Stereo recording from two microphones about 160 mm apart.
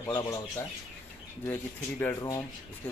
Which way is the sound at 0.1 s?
20° left (ahead or behind).